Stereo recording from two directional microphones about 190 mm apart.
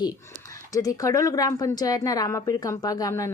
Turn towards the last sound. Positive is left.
turn(degrees=15)  # may be behind; listen again after turning